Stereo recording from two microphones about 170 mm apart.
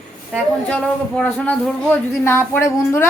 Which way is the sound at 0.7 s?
5° left (ahead or behind).